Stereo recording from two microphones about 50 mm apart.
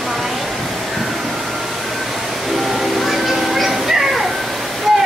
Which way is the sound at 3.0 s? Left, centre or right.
Centre.